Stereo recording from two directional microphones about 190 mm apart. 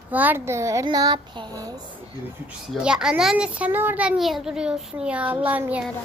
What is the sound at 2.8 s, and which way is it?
A child's voice, 5° right (ahead or behind).